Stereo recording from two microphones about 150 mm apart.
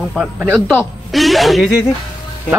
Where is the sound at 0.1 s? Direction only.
5° right (ahead or behind).